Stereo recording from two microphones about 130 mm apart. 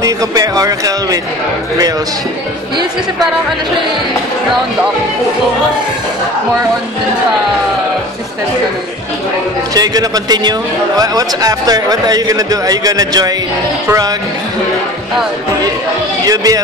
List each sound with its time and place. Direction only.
0.0 s speech: 25° right (ahead or behind)
9.8 s speech: 30° right (ahead or behind)
16.3 s speech: 30° right (ahead or behind)